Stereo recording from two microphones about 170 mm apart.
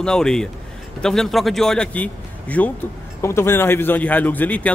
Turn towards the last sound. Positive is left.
turn(degrees=10)  # may be behind; listen again after turning